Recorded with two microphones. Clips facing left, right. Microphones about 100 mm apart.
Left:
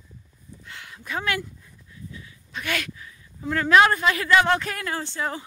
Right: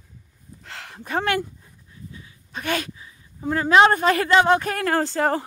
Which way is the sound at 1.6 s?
30° right (ahead or behind).